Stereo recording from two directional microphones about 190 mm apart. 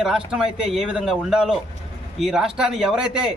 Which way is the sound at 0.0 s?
5° right (ahead or behind).